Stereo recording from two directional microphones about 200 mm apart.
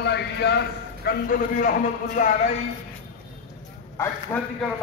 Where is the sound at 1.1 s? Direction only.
45° left (ahead or behind).